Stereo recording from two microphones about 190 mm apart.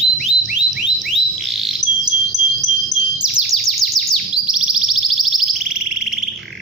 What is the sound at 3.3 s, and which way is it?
Music, centre (ahead or behind).